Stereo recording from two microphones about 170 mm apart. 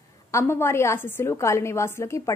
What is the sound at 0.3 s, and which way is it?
A woman's voice, 15° left (ahead or behind).